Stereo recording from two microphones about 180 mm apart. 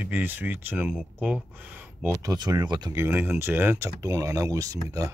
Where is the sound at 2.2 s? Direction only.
20° right (ahead or behind).